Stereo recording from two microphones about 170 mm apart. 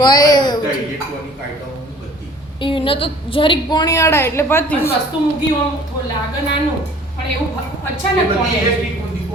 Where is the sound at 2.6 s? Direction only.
30° left (ahead or behind); by 4.8 s 15° left (ahead or behind).